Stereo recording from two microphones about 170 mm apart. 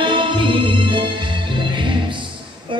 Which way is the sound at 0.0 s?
30° right (ahead or behind).